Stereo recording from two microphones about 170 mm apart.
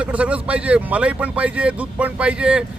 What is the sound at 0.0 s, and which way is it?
Speech, 10° right (ahead or behind).